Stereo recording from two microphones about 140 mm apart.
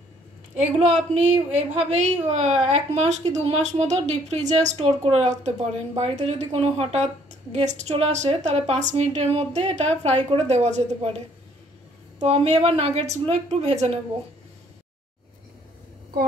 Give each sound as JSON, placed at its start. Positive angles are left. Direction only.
{"t": 0.6, "sound": "a woman's voice", "side_deg": -55}